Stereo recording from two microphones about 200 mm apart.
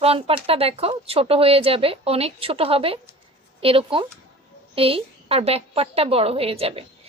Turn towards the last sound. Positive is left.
turn(degrees=-30)  # may be behind; listen again after turning